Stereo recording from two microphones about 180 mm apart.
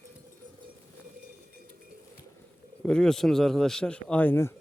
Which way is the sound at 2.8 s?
5° left (ahead or behind).